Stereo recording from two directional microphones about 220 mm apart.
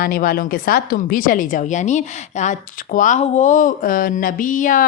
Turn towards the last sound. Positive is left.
turn(degrees=35)  # may be behind; listen again after turning